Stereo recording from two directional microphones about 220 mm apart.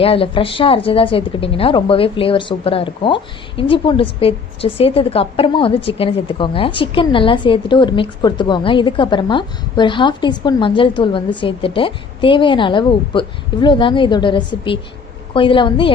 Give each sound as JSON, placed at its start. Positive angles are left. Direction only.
{"t": 0.0, "sound": "a woman's voice", "side_deg": 25}